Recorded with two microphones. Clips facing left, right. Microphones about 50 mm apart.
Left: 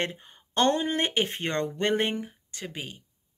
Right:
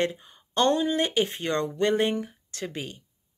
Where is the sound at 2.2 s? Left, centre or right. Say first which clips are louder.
Right 3 dB; centre.